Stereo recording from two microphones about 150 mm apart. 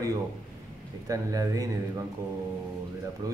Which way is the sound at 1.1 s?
20° right (ahead or behind).